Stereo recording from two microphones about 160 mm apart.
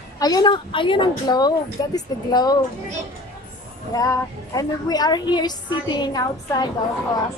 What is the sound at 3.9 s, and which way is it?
A woman's voice, 20° left (ahead or behind).